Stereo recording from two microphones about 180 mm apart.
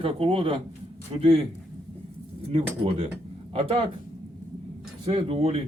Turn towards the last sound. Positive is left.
turn(degrees=-30)  # may be behind; listen again after turning